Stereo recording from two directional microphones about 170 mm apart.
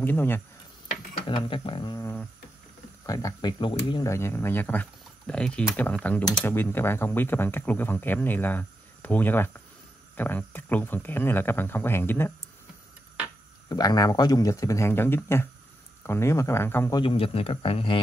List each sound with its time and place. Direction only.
0.0 s speech: 10° left (ahead or behind)
1.2 s speech: 30° left (ahead or behind)
3.1 s speech: 20° left (ahead or behind)
13.7 s speech: 20° left (ahead or behind)
16.9 s a man's voice: 30° left (ahead or behind)